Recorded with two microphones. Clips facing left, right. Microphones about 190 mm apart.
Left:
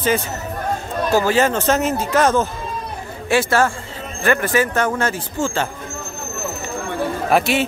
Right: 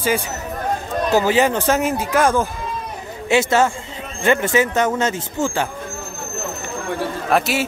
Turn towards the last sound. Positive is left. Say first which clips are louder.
# left 2 dB
turn(degrees=0)  # may be behind; listen again after turning